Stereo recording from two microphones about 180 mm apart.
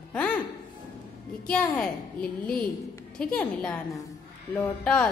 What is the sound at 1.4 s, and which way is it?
A woman's voice, 5° left (ahead or behind).